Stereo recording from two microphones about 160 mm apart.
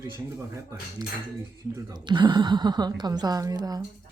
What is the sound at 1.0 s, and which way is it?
A woman's voice, 25° right (ahead or behind).